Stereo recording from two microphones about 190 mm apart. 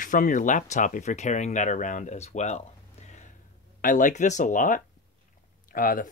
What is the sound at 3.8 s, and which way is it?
Speech, 45° left (ahead or behind).